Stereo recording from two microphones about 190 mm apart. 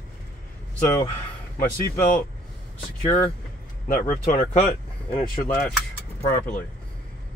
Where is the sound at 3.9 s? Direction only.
45° left (ahead or behind).